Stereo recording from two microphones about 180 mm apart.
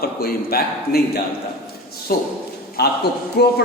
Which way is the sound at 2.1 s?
55° left (ahead or behind).